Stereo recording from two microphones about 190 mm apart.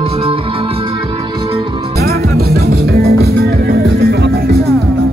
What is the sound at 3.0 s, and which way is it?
Music, 55° right (ahead or behind).